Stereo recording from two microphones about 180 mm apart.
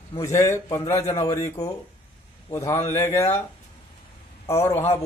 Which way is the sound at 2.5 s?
15° left (ahead or behind).